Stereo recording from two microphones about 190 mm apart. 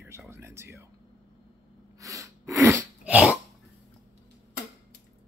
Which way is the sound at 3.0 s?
5° right (ahead or behind).